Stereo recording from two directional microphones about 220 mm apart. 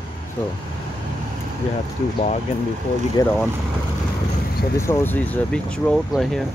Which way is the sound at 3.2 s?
15° left (ahead or behind).